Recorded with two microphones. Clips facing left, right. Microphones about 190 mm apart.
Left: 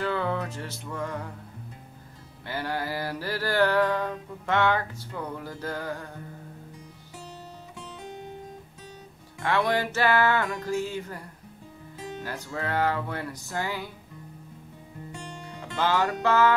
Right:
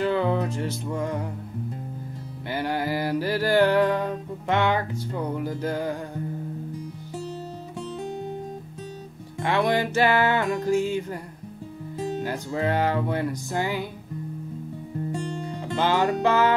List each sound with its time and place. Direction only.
0.0 s music: 20° right (ahead or behind)
2.5 s music: 15° right (ahead or behind)
9.4 s music: 15° right (ahead or behind)
12.2 s music: 25° right (ahead or behind)
15.1 s music: 35° right (ahead or behind)
15.8 s music: 20° right (ahead or behind)